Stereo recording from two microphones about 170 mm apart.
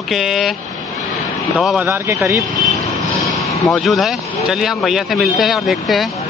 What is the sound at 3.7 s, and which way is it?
Speech, centre (ahead or behind).